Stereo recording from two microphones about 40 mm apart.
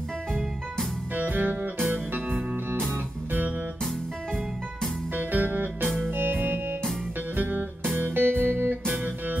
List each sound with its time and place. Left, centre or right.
1.1 s music: right
5.1 s music: right
8.9 s music: right